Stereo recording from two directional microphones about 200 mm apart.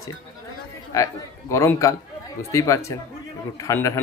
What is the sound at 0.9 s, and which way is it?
Speech, 15° left (ahead or behind).